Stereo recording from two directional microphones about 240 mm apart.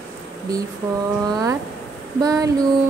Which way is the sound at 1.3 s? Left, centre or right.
Centre.